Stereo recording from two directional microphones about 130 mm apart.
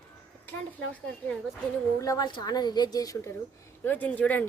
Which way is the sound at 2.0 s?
30° left (ahead or behind).